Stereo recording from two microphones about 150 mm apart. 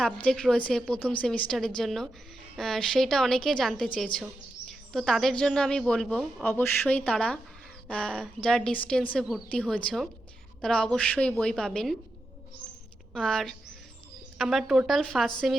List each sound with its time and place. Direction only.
0.0 s a woman's voice: 5° left (ahead or behind)
13.1 s a woman's voice: 5° left (ahead or behind)